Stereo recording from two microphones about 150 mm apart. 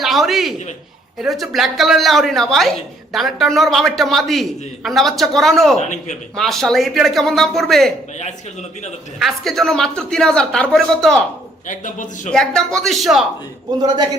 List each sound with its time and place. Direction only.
0.0 s a man's voice: centre (ahead or behind)
9.1 s a woman's voice: centre (ahead or behind)
11.7 s a man's voice: 60° left (ahead or behind)
12.3 s a woman's voice: 5° left (ahead or behind)
13.7 s a man's voice: 25° right (ahead or behind)